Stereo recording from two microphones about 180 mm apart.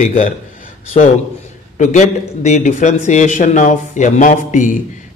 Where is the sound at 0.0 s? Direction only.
45° left (ahead or behind).